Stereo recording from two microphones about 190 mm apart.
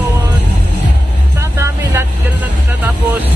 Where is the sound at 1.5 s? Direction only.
15° right (ahead or behind).